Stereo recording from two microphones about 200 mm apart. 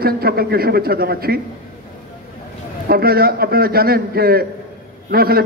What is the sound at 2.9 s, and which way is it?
A man's voice, 50° right (ahead or behind).